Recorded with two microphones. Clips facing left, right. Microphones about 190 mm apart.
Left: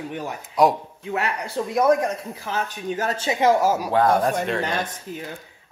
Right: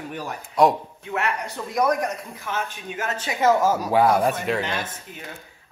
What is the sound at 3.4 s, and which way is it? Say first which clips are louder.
Speech: even; 10° left (ahead or behind).